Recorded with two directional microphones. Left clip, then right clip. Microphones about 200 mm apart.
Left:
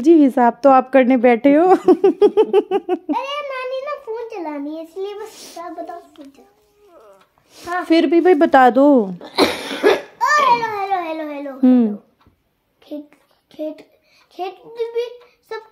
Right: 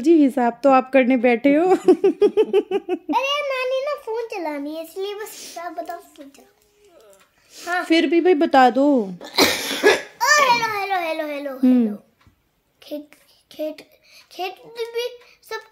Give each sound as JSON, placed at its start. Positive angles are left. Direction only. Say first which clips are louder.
{"t": 0.0, "sound": "speech", "louder": "left 4 dB", "side_deg": -10}
{"t": 7.8, "sound": "speech", "louder": "left 4 dB", "side_deg": -15}
{"t": 9.2, "sound": "speech", "louder": "left 1 dB", "side_deg": -40}
{"t": 10.5, "sound": "a sound", "louder": "left 2 dB", "side_deg": -30}
{"t": 11.6, "sound": "speech", "louder": "left 4 dB", "side_deg": -15}
{"t": 13.5, "sound": "a child's voice", "louder": "left 1 dB", "side_deg": -25}